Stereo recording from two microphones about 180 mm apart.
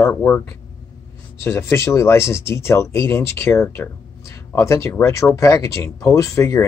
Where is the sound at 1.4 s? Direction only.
15° left (ahead or behind).